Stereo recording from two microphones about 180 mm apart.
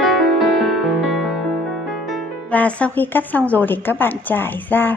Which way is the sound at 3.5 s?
10° left (ahead or behind).